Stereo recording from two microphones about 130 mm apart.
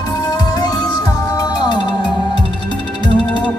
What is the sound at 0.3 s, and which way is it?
Music, 30° left (ahead or behind).